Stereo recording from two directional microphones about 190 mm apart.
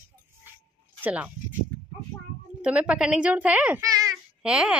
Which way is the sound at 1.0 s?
10° right (ahead or behind).